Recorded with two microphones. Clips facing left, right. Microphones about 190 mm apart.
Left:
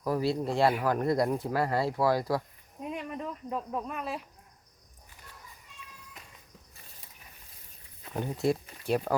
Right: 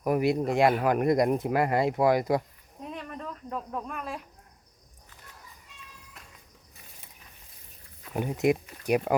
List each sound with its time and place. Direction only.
0.0 s speech: 20° right (ahead or behind)
2.8 s speech: 10° left (ahead or behind)
8.1 s speech: 15° right (ahead or behind)